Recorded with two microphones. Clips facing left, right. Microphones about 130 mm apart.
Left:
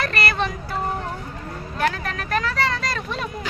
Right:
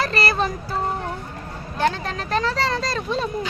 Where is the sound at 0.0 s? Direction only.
30° right (ahead or behind).